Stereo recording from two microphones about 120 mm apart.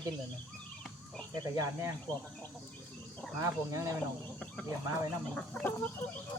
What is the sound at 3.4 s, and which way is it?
Speech, 25° right (ahead or behind).